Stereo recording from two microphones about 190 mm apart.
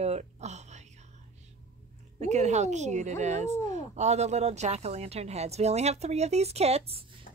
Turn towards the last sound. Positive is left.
turn(degrees=-35)  # may be behind; listen again after turning